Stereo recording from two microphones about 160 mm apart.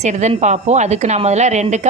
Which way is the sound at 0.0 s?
45° right (ahead or behind).